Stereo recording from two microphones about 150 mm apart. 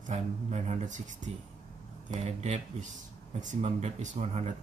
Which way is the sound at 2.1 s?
50° right (ahead or behind).